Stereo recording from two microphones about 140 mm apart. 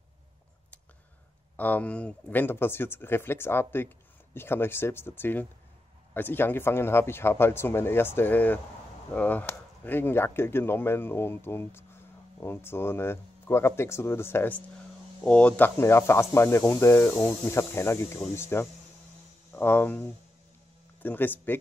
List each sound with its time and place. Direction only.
1.6 s speech: 10° left (ahead or behind)